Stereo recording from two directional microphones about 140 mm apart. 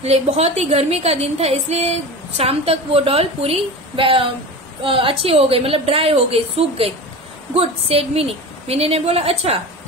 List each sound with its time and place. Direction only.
0.0 s a woman's voice: 50° right (ahead or behind)